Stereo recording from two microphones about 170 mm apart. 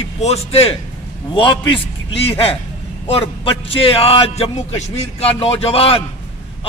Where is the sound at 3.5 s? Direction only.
35° left (ahead or behind).